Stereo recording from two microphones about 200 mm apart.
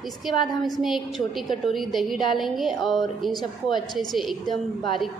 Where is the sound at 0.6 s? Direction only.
Centre (ahead or behind).